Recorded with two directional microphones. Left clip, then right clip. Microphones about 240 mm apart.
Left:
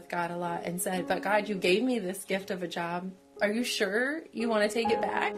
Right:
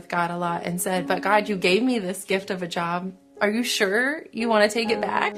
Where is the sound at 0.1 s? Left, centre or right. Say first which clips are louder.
Right 7 dB; right.